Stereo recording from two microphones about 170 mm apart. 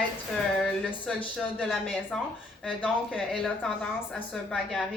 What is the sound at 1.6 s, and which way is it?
A woman's voice, 5° left (ahead or behind).